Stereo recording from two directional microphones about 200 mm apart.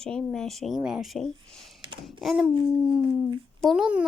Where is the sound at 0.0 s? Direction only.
5° left (ahead or behind).